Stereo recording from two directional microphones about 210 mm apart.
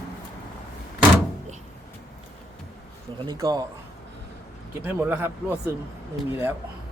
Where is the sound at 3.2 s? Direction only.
20° right (ahead or behind).